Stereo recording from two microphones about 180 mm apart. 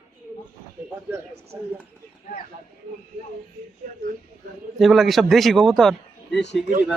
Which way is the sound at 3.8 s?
55° right (ahead or behind).